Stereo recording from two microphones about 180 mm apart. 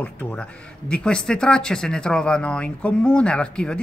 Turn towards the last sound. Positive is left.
turn(degrees=5)  # may be behind; listen again after turning